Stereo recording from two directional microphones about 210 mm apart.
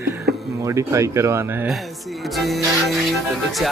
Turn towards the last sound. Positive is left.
turn(degrees=0)  # may be behind; listen again after turning